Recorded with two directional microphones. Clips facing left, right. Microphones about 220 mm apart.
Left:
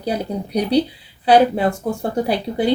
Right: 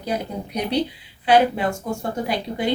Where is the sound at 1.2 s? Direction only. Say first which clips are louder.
Left 4 dB; 35° left (ahead or behind).